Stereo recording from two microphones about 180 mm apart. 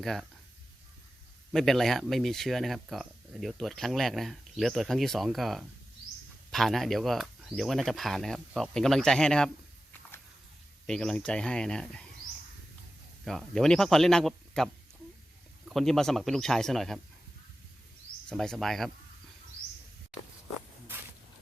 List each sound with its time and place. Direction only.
0.0 s speech: centre (ahead or behind)
1.5 s speech: centre (ahead or behind)
10.8 s speech: 5° left (ahead or behind)
13.2 s speech: centre (ahead or behind)
15.7 s speech: centre (ahead or behind)
18.3 s speech: 5° left (ahead or behind)